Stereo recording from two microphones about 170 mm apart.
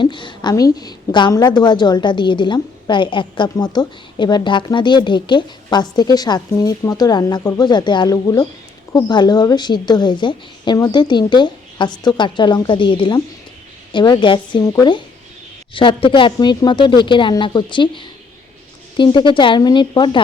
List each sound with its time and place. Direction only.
0.0 s a woman's voice: 30° left (ahead or behind)